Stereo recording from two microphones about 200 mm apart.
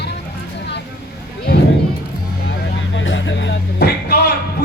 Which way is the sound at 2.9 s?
65° left (ahead or behind).